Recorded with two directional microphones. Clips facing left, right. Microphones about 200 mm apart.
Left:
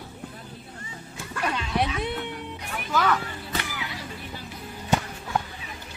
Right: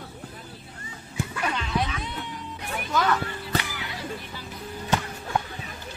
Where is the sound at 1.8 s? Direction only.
60° left (ahead or behind).